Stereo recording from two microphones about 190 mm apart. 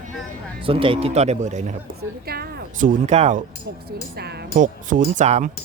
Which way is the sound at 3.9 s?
55° right (ahead or behind).